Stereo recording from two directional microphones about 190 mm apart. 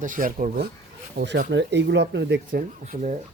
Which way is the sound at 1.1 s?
60° right (ahead or behind).